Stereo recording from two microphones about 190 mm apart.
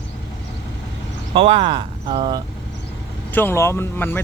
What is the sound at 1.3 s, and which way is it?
Speech, 30° right (ahead or behind).